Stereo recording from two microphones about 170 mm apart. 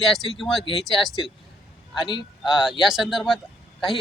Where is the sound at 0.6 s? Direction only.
30° left (ahead or behind).